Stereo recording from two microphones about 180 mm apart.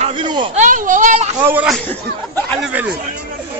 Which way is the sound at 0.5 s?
45° right (ahead or behind).